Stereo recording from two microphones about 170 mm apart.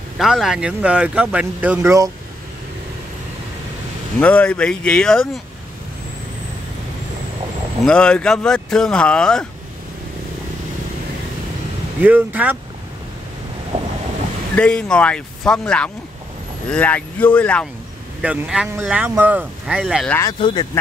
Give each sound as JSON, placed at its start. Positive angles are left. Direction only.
{"t": 0.2, "sound": "speech", "side_deg": 0}
{"t": 4.2, "sound": "speech", "side_deg": 10}
{"t": 7.8, "sound": "speech", "side_deg": 5}
{"t": 12.0, "sound": "speech", "side_deg": -10}
{"t": 14.5, "sound": "speech", "side_deg": 5}
{"t": 18.2, "sound": "speech", "side_deg": -5}
{"t": 20.3, "sound": "speech", "side_deg": 30}